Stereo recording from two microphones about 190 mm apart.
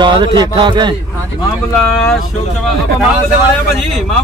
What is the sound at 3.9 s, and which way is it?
Speech, centre (ahead or behind).